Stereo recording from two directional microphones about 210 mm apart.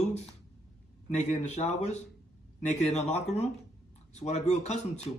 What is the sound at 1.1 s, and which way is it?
Speech, 35° left (ahead or behind).